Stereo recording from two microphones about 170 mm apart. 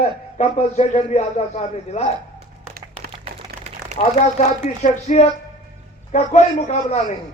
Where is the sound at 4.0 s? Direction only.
40° left (ahead or behind).